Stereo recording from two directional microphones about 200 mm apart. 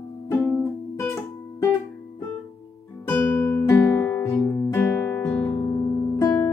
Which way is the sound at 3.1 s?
10° left (ahead or behind).